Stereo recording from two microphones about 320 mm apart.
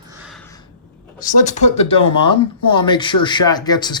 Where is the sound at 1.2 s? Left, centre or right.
Left.